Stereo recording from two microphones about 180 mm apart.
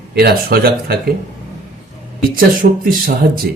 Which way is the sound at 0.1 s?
60° right (ahead or behind).